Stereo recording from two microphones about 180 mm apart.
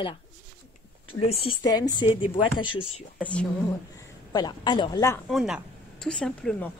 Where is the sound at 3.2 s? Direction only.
5° left (ahead or behind).